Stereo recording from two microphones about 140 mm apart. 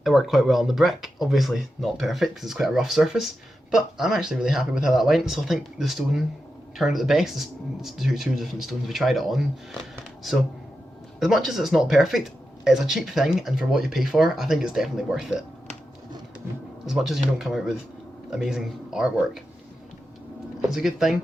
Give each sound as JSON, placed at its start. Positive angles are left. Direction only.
{"t": 0.0, "sound": "speech", "side_deg": 0}
{"t": 16.8, "sound": "speech", "side_deg": 0}
{"t": 20.7, "sound": "speech", "side_deg": -5}